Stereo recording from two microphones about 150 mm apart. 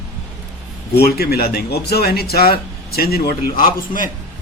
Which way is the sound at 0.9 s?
90° left.